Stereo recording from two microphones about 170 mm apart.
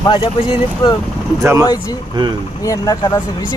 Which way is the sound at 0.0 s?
30° left (ahead or behind).